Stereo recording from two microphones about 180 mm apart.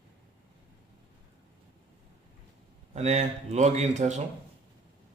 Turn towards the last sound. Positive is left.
turn(degrees=-40)  # may be behind; listen again after turning